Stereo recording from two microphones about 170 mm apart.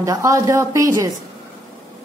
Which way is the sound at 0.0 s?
20° right (ahead or behind).